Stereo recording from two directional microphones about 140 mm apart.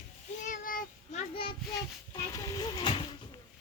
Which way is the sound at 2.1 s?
25° left (ahead or behind).